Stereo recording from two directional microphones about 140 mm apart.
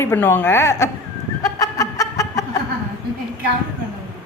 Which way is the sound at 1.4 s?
25° left (ahead or behind).